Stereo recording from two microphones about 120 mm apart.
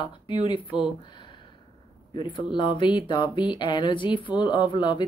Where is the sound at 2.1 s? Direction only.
40° left (ahead or behind).